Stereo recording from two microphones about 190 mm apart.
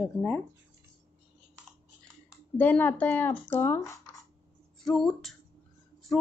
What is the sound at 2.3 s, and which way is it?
A woman's voice, 10° left (ahead or behind).